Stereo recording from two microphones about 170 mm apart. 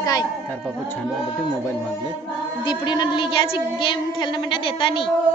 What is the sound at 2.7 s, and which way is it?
Speech, 25° left (ahead or behind).